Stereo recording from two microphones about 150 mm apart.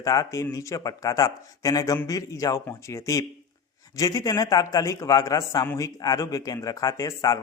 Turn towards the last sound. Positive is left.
turn(degrees=25)  # may be behind; listen again after turning